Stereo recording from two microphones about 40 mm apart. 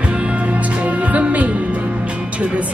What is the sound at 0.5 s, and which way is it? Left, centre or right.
Music, right.